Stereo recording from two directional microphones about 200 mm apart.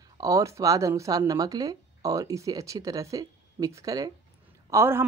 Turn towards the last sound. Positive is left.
turn(degrees=-10)  # may be behind; listen again after turning